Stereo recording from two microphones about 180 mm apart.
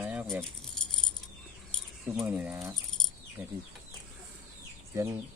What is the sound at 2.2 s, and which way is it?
Speech, 10° right (ahead or behind).